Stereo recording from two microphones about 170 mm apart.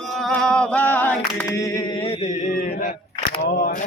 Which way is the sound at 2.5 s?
50° left (ahead or behind).